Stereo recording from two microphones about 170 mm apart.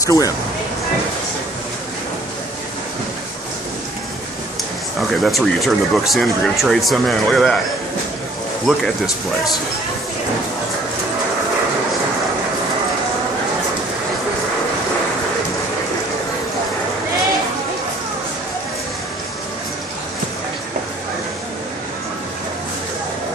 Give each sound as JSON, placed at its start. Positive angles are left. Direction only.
{"t": 0.0, "sound": "speech", "side_deg": 20}
{"t": 5.2, "sound": "speech", "side_deg": 0}
{"t": 8.6, "sound": "speech", "side_deg": 0}